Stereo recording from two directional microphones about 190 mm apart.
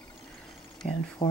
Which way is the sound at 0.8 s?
45° left (ahead or behind).